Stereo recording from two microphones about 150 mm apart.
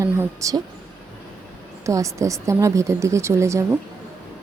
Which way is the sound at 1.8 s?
20° right (ahead or behind).